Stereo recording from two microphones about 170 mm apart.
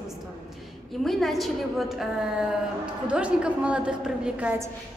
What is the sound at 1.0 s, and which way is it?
A woman's voice, centre (ahead or behind).